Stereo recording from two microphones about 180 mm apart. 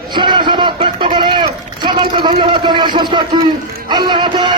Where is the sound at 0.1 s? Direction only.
25° right (ahead or behind).